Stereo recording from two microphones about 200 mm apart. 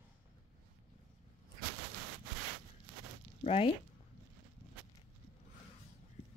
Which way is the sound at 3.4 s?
30° left (ahead or behind).